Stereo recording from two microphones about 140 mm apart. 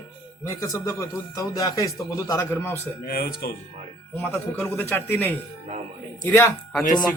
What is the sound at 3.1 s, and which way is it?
Speech, 90° left.